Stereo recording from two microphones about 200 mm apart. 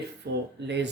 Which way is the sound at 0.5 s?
60° right (ahead or behind).